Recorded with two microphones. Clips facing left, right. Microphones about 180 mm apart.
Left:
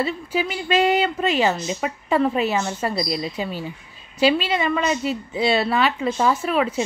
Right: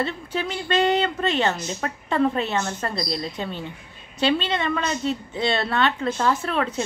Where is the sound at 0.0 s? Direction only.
5° left (ahead or behind).